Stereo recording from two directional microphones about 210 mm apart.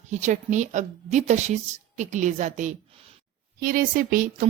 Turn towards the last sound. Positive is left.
turn(degrees=-40)  # may be behind; listen again after turning